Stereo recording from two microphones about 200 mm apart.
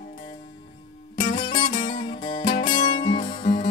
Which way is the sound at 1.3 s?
25° left (ahead or behind).